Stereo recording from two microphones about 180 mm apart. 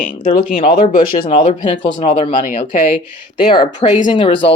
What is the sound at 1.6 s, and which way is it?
Speech, 25° left (ahead or behind).